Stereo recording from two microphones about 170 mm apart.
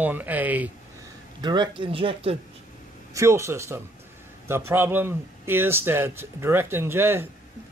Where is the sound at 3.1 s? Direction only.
15° right (ahead or behind).